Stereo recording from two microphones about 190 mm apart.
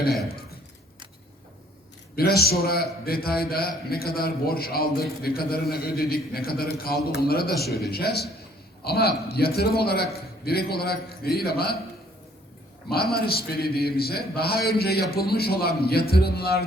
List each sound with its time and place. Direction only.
2.1 s a man's voice: 55° left (ahead or behind)
12.9 s a man's voice: 55° left (ahead or behind)